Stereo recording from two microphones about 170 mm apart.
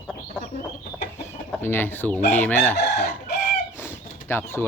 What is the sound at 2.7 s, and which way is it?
Chicken, 75° left (ahead or behind).